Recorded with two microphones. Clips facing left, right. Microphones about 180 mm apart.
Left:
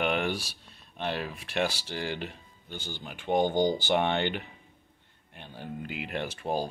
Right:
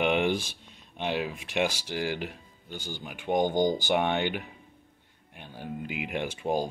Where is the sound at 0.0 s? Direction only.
15° right (ahead or behind).